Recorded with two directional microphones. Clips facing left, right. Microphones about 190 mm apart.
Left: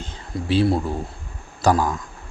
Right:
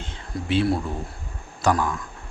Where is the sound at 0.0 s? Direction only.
35° left (ahead or behind).